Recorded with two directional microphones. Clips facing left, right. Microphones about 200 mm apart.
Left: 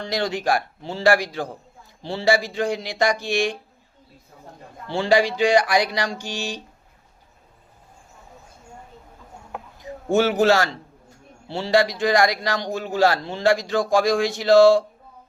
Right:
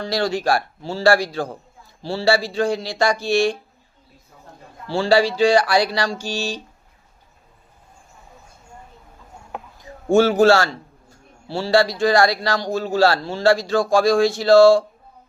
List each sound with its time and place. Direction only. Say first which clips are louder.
0.0 s a man's voice: right 3 dB; 20° left (ahead or behind)
4.9 s a man's voice: right 2 dB; 15° left (ahead or behind)
9.8 s a man's voice: right 4 dB; 20° left (ahead or behind)